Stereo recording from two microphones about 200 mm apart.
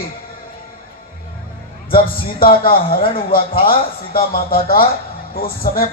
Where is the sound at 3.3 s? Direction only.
45° left (ahead or behind).